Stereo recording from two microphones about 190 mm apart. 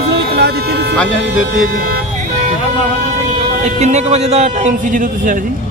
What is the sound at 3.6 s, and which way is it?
Speech, 35° right (ahead or behind).